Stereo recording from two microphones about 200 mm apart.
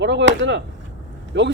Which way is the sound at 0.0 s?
60° right (ahead or behind).